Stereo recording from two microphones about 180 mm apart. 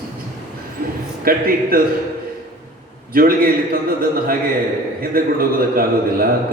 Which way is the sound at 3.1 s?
55° right (ahead or behind).